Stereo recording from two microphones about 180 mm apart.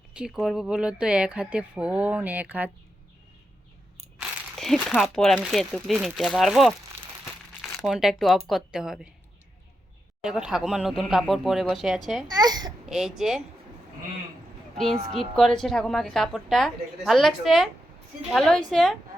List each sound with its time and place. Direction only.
0.1 s speech: 5° right (ahead or behind)
4.5 s speech: centre (ahead or behind)
7.8 s speech: centre (ahead or behind)
10.2 s speech: 5° right (ahead or behind)
12.3 s a sound: 20° right (ahead or behind)
12.8 s speech: centre (ahead or behind)
15.1 s speech: centre (ahead or behind)